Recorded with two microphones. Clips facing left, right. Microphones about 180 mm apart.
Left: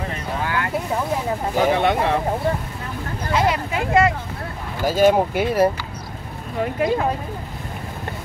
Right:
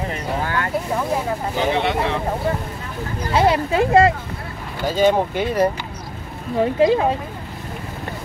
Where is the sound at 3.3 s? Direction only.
30° right (ahead or behind).